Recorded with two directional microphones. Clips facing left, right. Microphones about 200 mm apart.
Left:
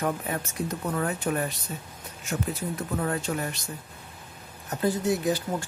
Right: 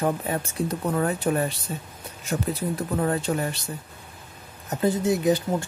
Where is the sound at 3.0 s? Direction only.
35° right (ahead or behind).